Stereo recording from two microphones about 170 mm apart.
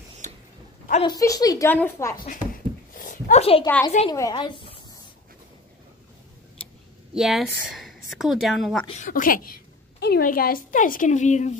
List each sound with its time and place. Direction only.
0.2 s dog: 45° right (ahead or behind)
1.0 s a woman's voice: 20° left (ahead or behind)
2.9 s a sound: 50° left (ahead or behind)
3.6 s a woman's voice: 15° left (ahead or behind)
7.2 s a woman's voice: centre (ahead or behind)
9.0 s a woman's voice: 55° left (ahead or behind)